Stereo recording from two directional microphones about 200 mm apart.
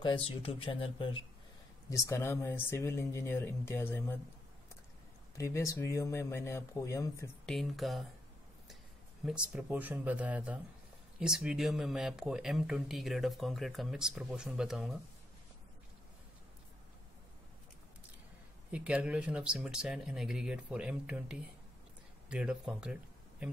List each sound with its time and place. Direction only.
0.0 s speech: 25° left (ahead or behind)
1.9 s speech: 15° left (ahead or behind)
5.4 s speech: 15° left (ahead or behind)
7.4 s speech: centre (ahead or behind)
9.2 s speech: 5° right (ahead or behind)
18.7 s speech: 5° right (ahead or behind)